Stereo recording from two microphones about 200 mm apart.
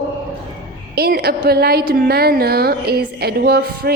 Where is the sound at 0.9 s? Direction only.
50° right (ahead or behind).